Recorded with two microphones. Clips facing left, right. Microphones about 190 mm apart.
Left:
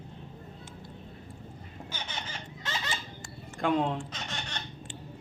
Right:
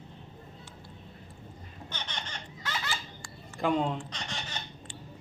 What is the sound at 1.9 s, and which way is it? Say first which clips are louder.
Laughter: even; 10° left (ahead or behind).